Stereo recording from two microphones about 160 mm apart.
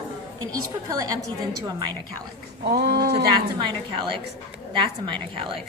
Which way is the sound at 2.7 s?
90° right.